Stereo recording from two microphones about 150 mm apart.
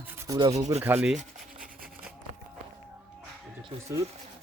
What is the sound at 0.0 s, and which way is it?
Rub, 15° right (ahead or behind).